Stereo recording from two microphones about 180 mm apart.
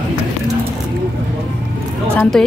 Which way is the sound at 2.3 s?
Centre (ahead or behind).